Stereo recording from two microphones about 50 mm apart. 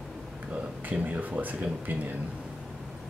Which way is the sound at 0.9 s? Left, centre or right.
Right.